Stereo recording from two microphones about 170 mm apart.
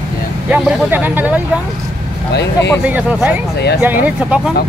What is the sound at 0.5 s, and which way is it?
Speech, 10° right (ahead or behind).